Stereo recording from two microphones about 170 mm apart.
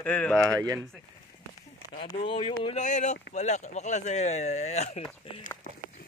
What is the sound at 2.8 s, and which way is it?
Speech, 45° left (ahead or behind).